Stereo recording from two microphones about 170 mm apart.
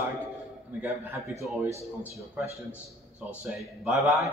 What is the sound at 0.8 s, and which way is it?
A man's voice, 15° right (ahead or behind).